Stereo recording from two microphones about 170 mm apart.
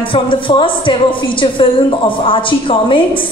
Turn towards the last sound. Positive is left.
turn(degrees=30)  # may be behind; listen again after turning